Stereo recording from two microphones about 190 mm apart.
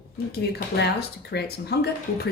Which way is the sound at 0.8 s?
60° left (ahead or behind).